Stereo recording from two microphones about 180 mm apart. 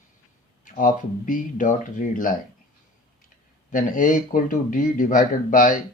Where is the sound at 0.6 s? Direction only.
45° left (ahead or behind).